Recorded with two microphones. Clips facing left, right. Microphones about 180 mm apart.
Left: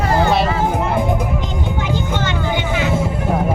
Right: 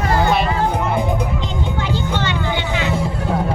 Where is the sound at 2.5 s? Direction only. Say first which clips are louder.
Left 2 dB; 15° left (ahead or behind).